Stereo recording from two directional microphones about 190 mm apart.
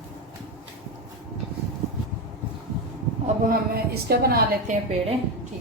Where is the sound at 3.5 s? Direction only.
55° right (ahead or behind).